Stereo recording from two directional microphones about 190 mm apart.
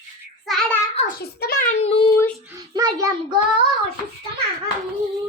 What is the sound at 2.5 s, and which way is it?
Child singing, 20° right (ahead or behind).